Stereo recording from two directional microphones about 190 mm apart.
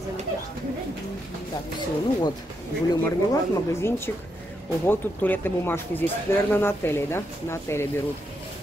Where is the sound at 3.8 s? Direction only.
10° left (ahead or behind).